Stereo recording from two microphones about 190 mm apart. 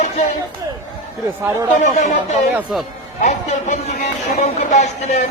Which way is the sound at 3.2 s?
35° left (ahead or behind).